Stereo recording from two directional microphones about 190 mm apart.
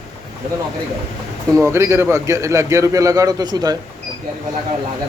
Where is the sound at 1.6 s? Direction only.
15° right (ahead or behind).